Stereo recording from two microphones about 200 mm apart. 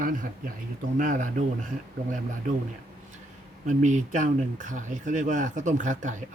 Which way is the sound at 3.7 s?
40° right (ahead or behind).